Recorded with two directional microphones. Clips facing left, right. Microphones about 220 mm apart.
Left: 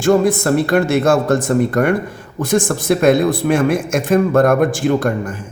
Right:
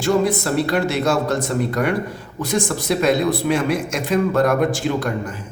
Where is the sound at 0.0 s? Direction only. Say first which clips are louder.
Left 5 dB; 50° left (ahead or behind).